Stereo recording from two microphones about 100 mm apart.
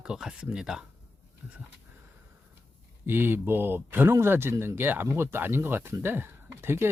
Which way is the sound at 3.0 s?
20° right (ahead or behind).